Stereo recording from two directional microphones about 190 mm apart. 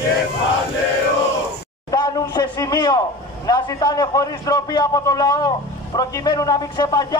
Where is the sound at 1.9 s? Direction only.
20° left (ahead or behind).